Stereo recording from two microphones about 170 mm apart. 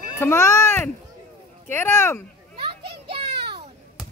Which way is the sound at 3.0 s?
35° right (ahead or behind).